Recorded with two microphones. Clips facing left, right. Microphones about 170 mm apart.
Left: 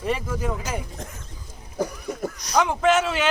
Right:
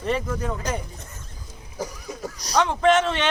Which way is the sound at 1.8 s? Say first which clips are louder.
Left 5 dB; 55° left (ahead or behind).